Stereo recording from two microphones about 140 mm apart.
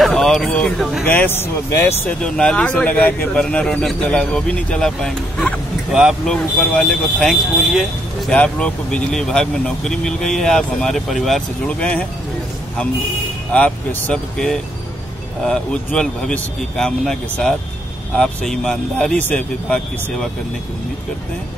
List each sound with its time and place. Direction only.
0.0 s speech: 5° left (ahead or behind)
1.0 s speech: 15° left (ahead or behind)
2.2 s speech: 5° left (ahead or behind)
13.5 s speech: 10° left (ahead or behind)